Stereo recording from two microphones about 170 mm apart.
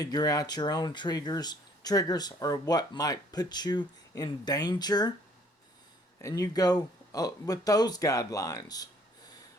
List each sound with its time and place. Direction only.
0.0 s speech: 20° left (ahead or behind)
6.2 s speech: 20° left (ahead or behind)